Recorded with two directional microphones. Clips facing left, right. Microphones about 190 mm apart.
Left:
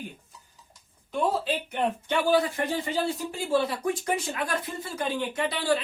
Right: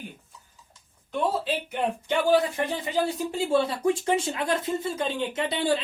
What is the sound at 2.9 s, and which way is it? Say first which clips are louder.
Speech: right 2 dB; 25° right (ahead or behind).